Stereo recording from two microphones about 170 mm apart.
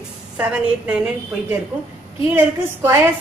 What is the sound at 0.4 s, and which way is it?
Speech, 10° right (ahead or behind).